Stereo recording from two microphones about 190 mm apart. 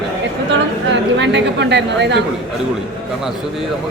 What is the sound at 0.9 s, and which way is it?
A woman's voice, 65° right (ahead or behind).